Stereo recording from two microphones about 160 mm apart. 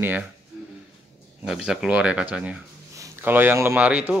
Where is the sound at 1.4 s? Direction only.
5° right (ahead or behind).